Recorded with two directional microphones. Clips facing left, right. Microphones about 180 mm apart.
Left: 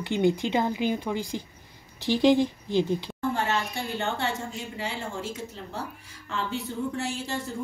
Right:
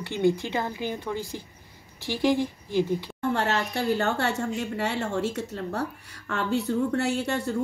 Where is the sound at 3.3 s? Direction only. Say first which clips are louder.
Right 4 dB; 65° right (ahead or behind).